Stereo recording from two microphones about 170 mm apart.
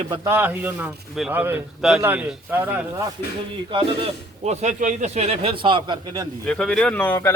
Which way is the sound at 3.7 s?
35° right (ahead or behind).